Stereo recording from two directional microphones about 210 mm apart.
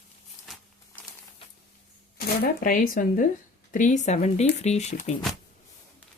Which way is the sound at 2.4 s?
40° left (ahead or behind).